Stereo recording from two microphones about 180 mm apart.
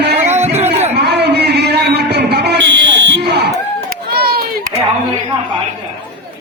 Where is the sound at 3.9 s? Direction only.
55° right (ahead or behind).